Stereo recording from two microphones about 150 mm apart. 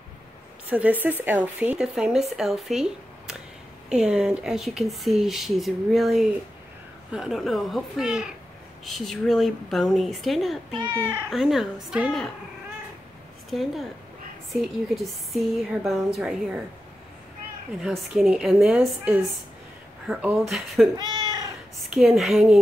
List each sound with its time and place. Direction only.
0.7 s a woman's voice: 10° right (ahead or behind)
13.5 s speech: centre (ahead or behind)
17.8 s speech: centre (ahead or behind)
20.9 s cat: 30° right (ahead or behind)
21.7 s speech: centre (ahead or behind)